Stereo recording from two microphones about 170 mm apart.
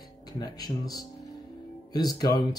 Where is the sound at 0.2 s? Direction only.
25° left (ahead or behind).